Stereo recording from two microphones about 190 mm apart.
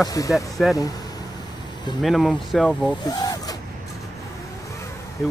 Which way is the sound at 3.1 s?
20° left (ahead or behind).